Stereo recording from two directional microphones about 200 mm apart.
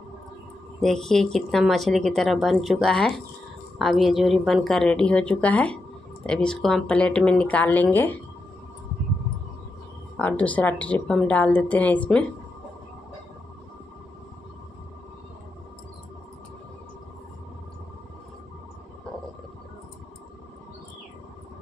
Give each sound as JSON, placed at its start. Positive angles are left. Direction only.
{"t": 0.7, "sound": "speech", "side_deg": 0}
{"t": 10.1, "sound": "a woman's voice", "side_deg": 5}